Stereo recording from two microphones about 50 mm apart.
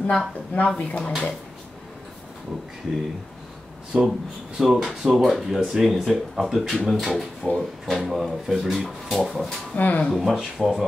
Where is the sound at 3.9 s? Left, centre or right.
Centre.